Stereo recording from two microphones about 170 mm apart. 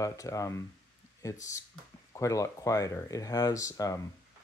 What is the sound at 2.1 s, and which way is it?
Speech, 20° left (ahead or behind).